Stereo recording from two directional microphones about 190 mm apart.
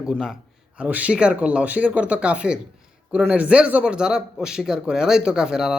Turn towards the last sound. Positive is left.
turn(degrees=-5)  # may be behind; listen again after turning